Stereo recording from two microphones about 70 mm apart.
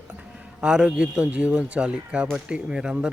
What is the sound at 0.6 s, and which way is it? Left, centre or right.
Speech, centre.